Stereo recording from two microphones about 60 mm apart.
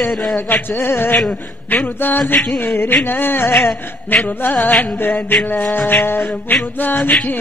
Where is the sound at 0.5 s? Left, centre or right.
Left.